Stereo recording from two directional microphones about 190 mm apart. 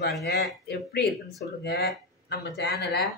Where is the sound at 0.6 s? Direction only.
60° left (ahead or behind).